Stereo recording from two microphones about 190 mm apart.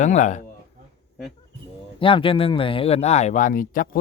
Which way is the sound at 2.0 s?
25° left (ahead or behind).